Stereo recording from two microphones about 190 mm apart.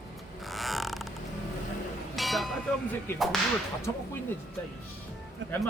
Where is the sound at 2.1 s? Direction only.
Centre (ahead or behind).